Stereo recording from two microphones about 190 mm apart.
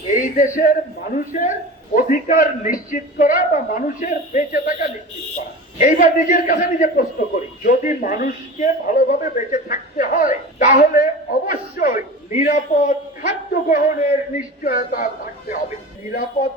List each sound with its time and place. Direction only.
0.1 s speech: 45° left (ahead or behind)